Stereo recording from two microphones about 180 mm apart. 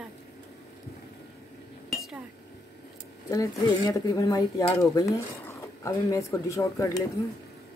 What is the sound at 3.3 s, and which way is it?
Speech, 20° left (ahead or behind).